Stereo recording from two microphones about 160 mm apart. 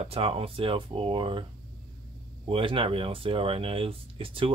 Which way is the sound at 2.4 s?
35° right (ahead or behind).